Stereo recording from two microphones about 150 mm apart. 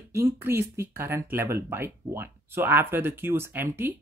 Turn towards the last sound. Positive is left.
turn(degrees=-15)  # may be behind; listen again after turning